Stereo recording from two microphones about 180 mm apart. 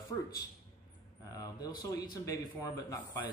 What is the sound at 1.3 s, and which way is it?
A man's voice, 20° left (ahead or behind).